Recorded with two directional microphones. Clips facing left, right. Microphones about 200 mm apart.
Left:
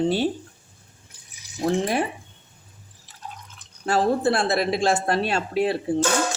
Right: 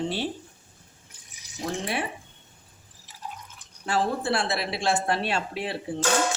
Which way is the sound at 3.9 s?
40° left (ahead or behind).